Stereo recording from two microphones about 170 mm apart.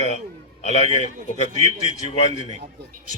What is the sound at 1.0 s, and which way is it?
Speech, 40° right (ahead or behind).